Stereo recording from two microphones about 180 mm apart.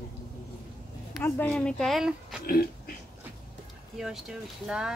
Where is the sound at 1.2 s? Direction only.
10° left (ahead or behind).